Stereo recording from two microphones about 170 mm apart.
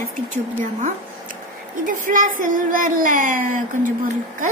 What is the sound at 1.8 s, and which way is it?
Speech, 50° right (ahead or behind).